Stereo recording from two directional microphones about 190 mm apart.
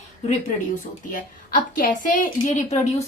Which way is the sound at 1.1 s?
50° left (ahead or behind).